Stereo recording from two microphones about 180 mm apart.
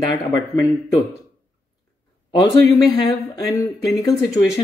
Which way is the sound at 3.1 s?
20° left (ahead or behind).